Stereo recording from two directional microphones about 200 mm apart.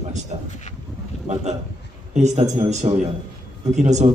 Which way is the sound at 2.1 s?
35° right (ahead or behind).